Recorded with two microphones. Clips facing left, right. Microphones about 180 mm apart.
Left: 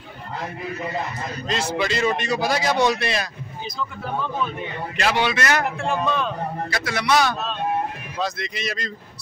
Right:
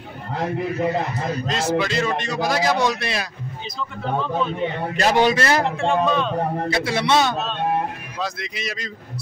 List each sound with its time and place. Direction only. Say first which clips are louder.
1.5 s a man's voice: right 1 dB; centre (ahead or behind)
4.9 s a man's voice: right 4 dB; 40° right (ahead or behind)
5.8 s a man's voice: right 4 dB; centre (ahead or behind)
6.7 s a man's voice: right 1 dB; 25° right (ahead or behind)
8.2 s a man's voice: left 2 dB; centre (ahead or behind)